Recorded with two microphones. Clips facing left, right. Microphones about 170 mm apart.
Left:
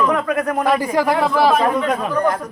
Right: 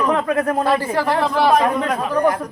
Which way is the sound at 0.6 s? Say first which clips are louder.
Left 2 dB; 15° left (ahead or behind).